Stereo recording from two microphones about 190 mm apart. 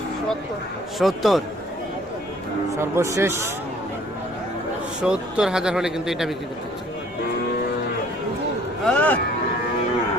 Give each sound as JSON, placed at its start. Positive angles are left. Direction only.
{"t": 0.9, "sound": "speech", "side_deg": 0}
{"t": 2.6, "sound": "a man's voice", "side_deg": -15}
{"t": 5.0, "sound": "speech", "side_deg": -5}
{"t": 8.8, "sound": "a sound", "side_deg": 5}